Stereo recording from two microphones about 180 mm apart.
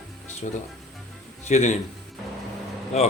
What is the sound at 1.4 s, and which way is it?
Speech, 40° left (ahead or behind).